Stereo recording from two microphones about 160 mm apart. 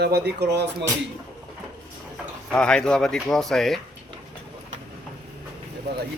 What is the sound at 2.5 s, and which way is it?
Speech, 5° left (ahead or behind).